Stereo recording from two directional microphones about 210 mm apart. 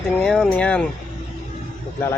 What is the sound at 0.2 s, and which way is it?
Speech, centre (ahead or behind).